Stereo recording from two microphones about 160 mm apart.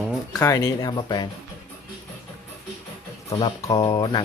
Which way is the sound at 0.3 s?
20° left (ahead or behind).